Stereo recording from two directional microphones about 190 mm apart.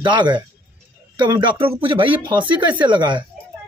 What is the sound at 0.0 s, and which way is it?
A man's voice, 25° right (ahead or behind).